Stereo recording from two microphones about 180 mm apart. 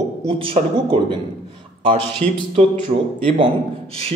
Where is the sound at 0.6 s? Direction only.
40° right (ahead or behind).